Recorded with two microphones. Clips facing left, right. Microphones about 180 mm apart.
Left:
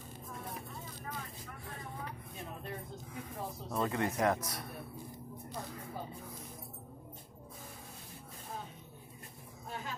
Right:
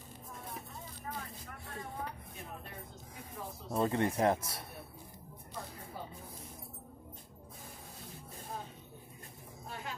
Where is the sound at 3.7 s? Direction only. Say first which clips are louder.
Right 3 dB; 30° right (ahead or behind).